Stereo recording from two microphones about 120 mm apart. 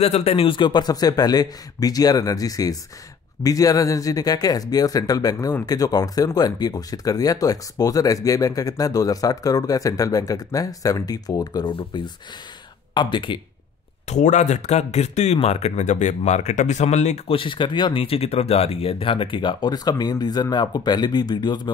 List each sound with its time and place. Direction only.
0.0 s speech: 60° left (ahead or behind); by 11.7 s 30° left (ahead or behind)
12.9 s speech: 40° left (ahead or behind)
14.0 s speech: 85° left; by 17.2 s 70° left (ahead or behind)
17.3 s speech: 45° left (ahead or behind)